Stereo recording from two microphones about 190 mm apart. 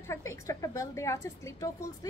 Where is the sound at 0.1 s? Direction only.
15° left (ahead or behind).